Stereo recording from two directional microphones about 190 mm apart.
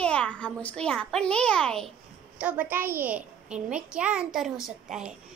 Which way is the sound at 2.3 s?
5° right (ahead or behind).